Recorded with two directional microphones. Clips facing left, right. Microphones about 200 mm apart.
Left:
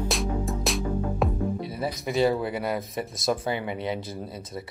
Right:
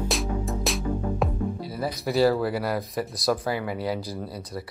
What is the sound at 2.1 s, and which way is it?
Speech, 20° left (ahead or behind).